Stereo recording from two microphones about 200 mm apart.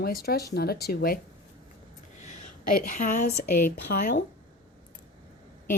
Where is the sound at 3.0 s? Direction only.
40° left (ahead or behind).